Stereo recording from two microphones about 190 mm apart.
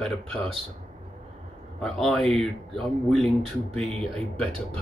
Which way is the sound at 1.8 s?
Centre (ahead or behind).